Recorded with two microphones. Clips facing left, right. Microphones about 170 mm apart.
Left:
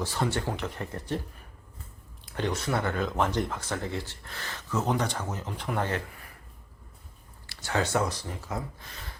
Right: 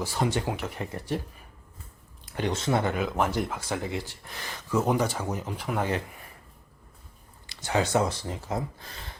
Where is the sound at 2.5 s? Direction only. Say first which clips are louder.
Right 5 dB; 25° right (ahead or behind).